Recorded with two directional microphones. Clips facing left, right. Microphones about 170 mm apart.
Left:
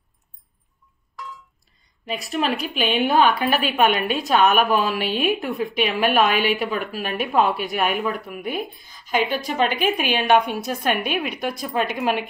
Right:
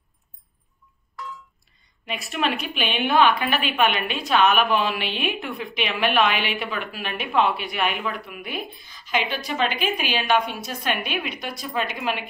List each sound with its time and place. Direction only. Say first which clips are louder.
2.0 s a woman's voice: left 2 dB; 35° left (ahead or behind)